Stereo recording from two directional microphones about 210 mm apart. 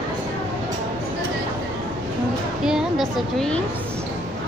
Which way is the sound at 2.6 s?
Centre (ahead or behind).